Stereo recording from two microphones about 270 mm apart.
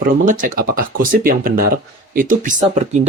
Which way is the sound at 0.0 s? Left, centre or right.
Right.